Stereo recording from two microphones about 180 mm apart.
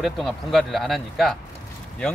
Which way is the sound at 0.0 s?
Centre (ahead or behind).